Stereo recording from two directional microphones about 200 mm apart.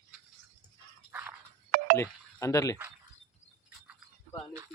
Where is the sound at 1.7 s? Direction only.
40° right (ahead or behind).